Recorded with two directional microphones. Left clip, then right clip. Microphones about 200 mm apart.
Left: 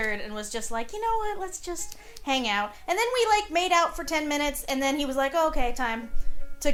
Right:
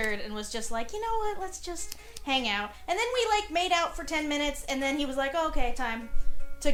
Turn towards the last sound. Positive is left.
turn(degrees=25)  # may be behind; listen again after turning